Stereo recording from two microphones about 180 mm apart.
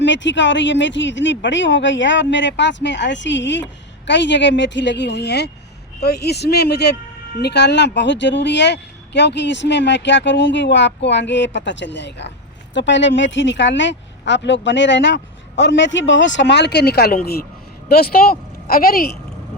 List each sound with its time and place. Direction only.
0.0 s speech: 90° left; by 12.3 s 75° left (ahead or behind)
12.7 s speech: 85° left; by 19.1 s 55° left (ahead or behind)